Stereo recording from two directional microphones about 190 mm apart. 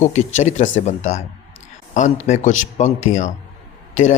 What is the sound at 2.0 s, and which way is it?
Speech, 40° left (ahead or behind).